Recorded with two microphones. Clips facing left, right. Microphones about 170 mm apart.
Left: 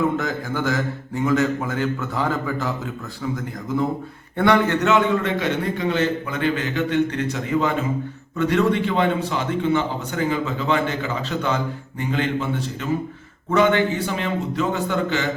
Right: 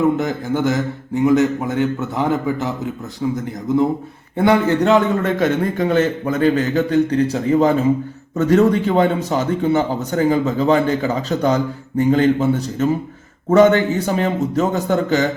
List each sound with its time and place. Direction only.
0.2 s a man's voice: 20° right (ahead or behind); by 15.3 s 40° right (ahead or behind)